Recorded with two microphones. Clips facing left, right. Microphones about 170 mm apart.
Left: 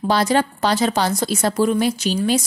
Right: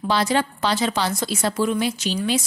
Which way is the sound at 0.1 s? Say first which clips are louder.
Left 3 dB; 45° left (ahead or behind).